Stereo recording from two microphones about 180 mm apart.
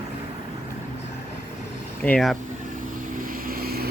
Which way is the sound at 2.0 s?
5° left (ahead or behind).